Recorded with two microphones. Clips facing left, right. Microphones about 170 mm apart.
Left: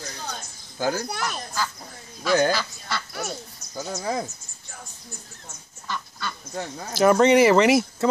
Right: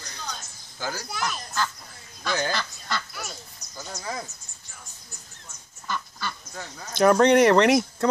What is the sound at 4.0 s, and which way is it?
Speech, 40° left (ahead or behind).